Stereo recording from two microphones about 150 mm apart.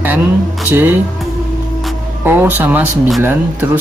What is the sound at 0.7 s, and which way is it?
Speech, 15° right (ahead or behind).